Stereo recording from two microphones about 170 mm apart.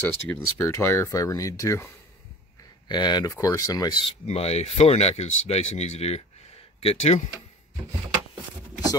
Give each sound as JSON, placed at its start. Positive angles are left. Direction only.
{"t": 0.3, "sound": "speech", "side_deg": 15}
{"t": 2.9, "sound": "speech", "side_deg": 25}
{"t": 4.3, "sound": "speech", "side_deg": 40}